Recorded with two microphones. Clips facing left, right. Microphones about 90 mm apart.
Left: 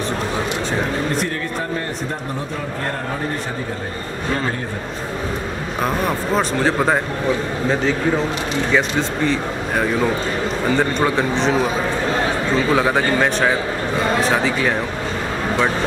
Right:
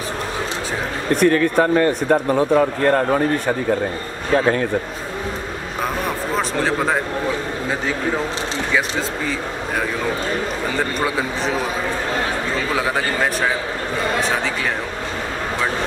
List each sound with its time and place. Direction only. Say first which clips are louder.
1.2 s speech: right 9 dB; 70° right (ahead or behind)
6.3 s speech: left 2 dB; centre (ahead or behind)
8.7 s speech: left 3 dB; 5° right (ahead or behind)
12.7 s speech: left 3 dB; centre (ahead or behind)